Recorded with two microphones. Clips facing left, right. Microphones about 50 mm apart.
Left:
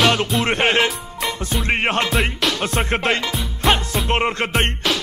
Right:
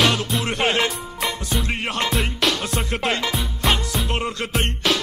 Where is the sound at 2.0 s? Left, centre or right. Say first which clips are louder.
Left 3 dB; centre.